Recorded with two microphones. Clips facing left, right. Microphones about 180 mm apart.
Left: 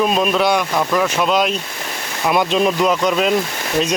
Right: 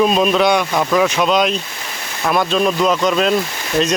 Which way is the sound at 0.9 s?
10° right (ahead or behind).